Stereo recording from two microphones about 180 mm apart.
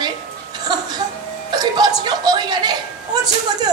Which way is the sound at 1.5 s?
20° right (ahead or behind).